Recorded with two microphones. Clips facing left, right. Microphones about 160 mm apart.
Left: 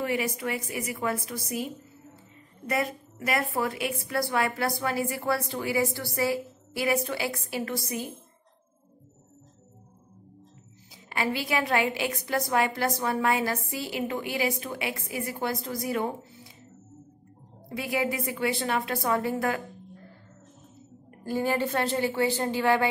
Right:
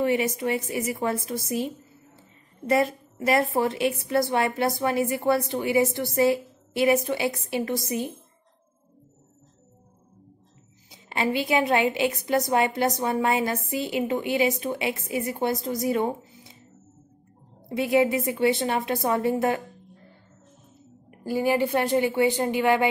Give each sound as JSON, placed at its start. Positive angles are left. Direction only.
{"t": 0.0, "sound": "a woman's voice", "side_deg": -25}
{"t": 10.9, "sound": "a woman's voice", "side_deg": -20}
{"t": 17.6, "sound": "a woman's voice", "side_deg": -25}
{"t": 21.2, "sound": "a woman's voice", "side_deg": -10}